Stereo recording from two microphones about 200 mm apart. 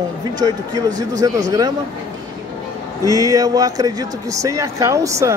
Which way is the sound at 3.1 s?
15° right (ahead or behind).